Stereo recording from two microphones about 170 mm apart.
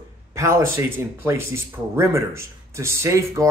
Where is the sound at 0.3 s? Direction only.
15° right (ahead or behind).